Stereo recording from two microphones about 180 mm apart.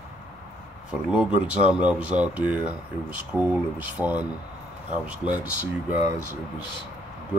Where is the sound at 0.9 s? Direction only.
5° right (ahead or behind).